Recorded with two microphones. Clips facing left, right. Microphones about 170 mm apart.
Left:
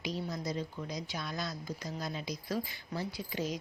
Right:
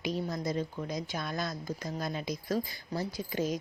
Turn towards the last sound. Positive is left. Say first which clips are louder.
# right 4 dB
turn(degrees=-45)  # may be behind; listen again after turning